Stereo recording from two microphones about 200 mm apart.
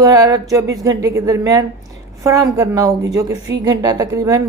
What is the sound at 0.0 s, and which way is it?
A woman's voice, 15° right (ahead or behind).